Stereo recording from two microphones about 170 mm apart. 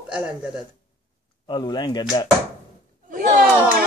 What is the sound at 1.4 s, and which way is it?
Speech, 25° left (ahead or behind).